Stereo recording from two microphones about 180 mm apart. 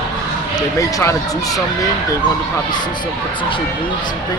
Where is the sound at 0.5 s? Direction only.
20° left (ahead or behind).